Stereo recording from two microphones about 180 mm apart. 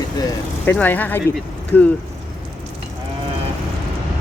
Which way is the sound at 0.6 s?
10° left (ahead or behind).